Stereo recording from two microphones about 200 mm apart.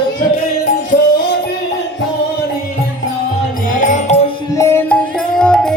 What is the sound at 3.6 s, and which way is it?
Music, 40° left (ahead or behind).